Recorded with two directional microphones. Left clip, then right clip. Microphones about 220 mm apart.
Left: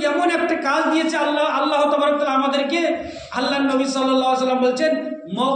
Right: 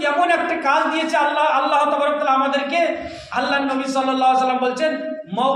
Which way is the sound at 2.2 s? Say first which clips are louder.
Right 1 dB; 20° right (ahead or behind).